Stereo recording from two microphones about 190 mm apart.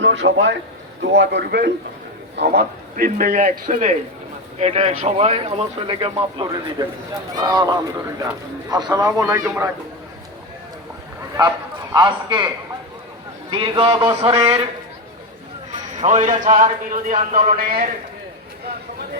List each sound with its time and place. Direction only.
0.0 s a man's voice: 75° right (ahead or behind); by 6.1 s 30° right (ahead or behind)
6.1 s speech: 20° right (ahead or behind)
11.3 s a man's voice: 20° right (ahead or behind)
13.5 s speech: 25° right (ahead or behind)
16.0 s a man's voice: 40° right (ahead or behind)